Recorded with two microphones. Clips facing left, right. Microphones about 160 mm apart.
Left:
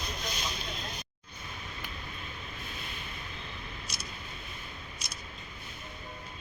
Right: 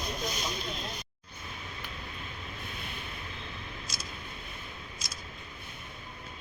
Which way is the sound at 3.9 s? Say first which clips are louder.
Right 1 dB; 90° right.